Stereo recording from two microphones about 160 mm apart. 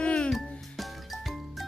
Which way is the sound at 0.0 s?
5° left (ahead or behind).